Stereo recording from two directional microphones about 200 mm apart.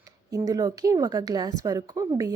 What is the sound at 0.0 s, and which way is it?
Speech, 15° right (ahead or behind).